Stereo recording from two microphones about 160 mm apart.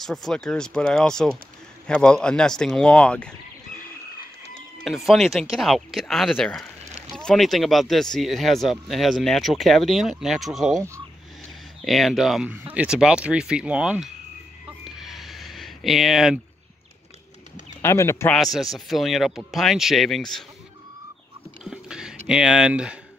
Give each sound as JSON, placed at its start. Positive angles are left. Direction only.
{"t": 0.0, "sound": "speech", "side_deg": 0}
{"t": 4.8, "sound": "speech", "side_deg": 0}
{"t": 11.8, "sound": "speech", "side_deg": 0}
{"t": 14.9, "sound": "a sound", "side_deg": 0}
{"t": 17.8, "sound": "speech", "side_deg": 15}
{"t": 18.3, "sound": "speech", "side_deg": 0}
{"t": 21.6, "sound": "a sound", "side_deg": -5}